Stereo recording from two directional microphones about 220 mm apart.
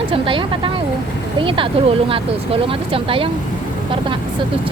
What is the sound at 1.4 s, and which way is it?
Speech, 25° right (ahead or behind).